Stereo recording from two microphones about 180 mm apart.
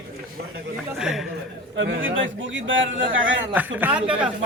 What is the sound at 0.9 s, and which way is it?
Speech, 5° right (ahead or behind).